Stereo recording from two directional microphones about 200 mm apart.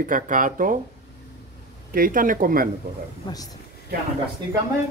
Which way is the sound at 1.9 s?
45° right (ahead or behind).